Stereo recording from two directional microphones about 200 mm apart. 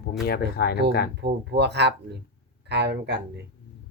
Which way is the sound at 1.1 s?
55° right (ahead or behind).